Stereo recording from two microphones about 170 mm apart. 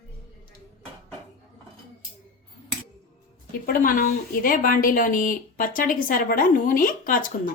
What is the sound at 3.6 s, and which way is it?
A woman's voice, 55° left (ahead or behind).